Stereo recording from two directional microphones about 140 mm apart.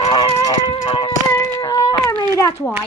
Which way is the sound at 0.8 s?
35° left (ahead or behind).